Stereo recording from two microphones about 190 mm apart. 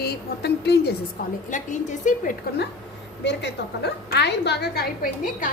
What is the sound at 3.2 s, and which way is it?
A woman's voice, 60° left (ahead or behind).